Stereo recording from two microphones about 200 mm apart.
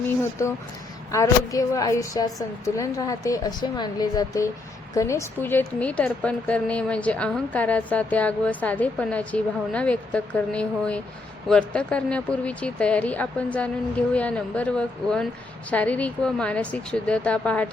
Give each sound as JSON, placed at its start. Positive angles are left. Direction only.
{"t": 0.4, "sound": "a woman's voice", "side_deg": 15}